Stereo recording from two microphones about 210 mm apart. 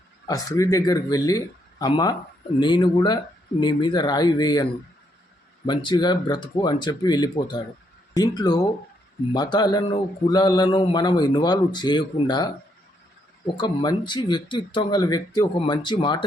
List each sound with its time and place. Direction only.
0.3 s speech: 15° left (ahead or behind)
13.6 s speech: 20° left (ahead or behind)